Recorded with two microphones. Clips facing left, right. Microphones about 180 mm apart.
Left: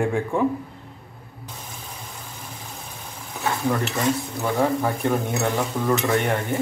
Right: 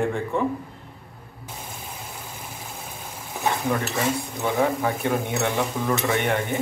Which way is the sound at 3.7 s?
Centre (ahead or behind).